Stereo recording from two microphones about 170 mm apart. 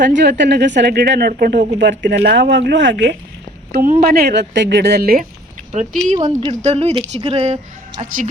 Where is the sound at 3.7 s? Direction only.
60° right (ahead or behind).